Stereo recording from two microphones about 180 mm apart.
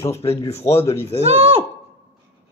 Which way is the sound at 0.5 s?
35° left (ahead or behind).